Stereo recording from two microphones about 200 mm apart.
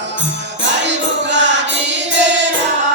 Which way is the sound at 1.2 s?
65° right (ahead or behind).